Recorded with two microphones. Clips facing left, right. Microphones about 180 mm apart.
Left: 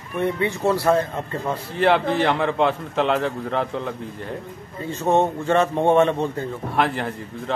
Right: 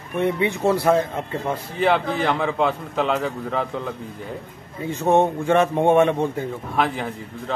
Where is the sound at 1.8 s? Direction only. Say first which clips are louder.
Left 2 dB; centre (ahead or behind).